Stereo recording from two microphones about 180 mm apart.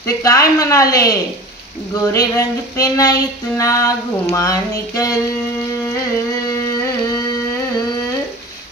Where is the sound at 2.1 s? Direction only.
20° left (ahead or behind).